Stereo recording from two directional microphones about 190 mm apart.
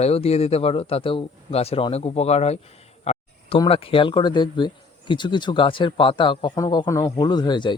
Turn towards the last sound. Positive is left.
turn(degrees=25)  # may be behind; listen again after turning